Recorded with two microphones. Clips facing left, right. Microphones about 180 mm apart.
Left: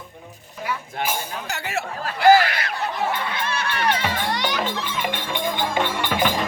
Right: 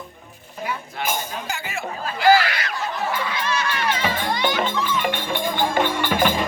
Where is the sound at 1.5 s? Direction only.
70° left (ahead or behind).